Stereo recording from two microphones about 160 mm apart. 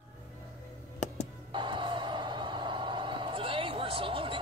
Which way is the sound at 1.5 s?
30° right (ahead or behind).